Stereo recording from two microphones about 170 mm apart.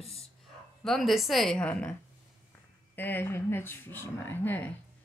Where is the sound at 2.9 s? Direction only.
10° left (ahead or behind).